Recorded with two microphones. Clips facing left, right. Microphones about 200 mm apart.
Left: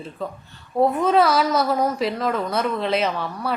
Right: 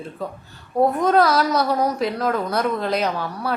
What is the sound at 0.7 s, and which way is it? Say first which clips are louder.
A woman's voice: right 1 dB; centre (ahead or behind).